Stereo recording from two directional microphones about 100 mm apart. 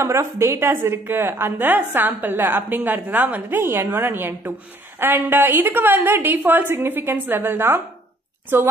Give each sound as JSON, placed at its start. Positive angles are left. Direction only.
{"t": 0.0, "sound": "a woman's voice", "side_deg": -30}